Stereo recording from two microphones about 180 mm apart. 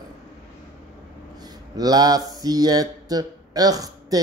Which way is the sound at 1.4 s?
20° right (ahead or behind).